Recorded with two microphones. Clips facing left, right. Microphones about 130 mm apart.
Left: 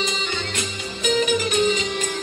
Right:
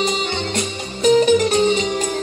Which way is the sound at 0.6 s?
35° right (ahead or behind).